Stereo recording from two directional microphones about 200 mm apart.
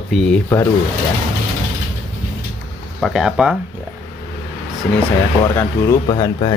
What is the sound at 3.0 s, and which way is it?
Speech, centre (ahead or behind).